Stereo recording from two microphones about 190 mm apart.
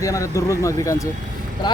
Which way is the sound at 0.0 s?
15° left (ahead or behind).